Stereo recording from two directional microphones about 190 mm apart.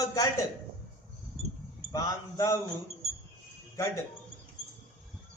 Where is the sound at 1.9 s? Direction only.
15° left (ahead or behind).